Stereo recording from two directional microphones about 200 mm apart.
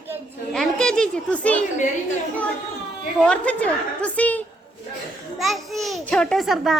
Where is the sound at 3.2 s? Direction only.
5° left (ahead or behind).